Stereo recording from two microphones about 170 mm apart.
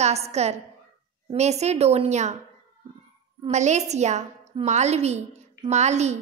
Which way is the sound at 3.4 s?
40° right (ahead or behind).